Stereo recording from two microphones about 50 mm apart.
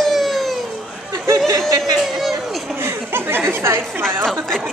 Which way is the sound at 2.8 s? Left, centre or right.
Right.